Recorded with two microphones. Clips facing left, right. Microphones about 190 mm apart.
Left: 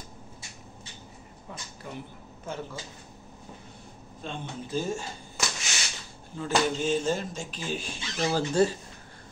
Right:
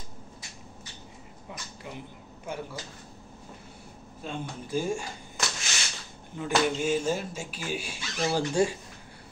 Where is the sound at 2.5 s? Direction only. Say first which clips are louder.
Even; 15° right (ahead or behind).